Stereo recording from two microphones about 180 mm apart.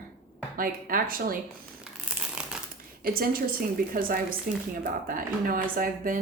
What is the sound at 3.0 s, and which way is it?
Speech, 55° right (ahead or behind).